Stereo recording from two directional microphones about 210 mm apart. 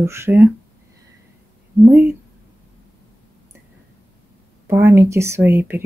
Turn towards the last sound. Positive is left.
turn(degrees=-10)  # may be behind; listen again after turning